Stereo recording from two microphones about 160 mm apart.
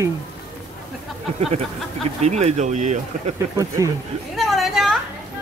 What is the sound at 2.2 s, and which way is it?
Speech, 45° right (ahead or behind).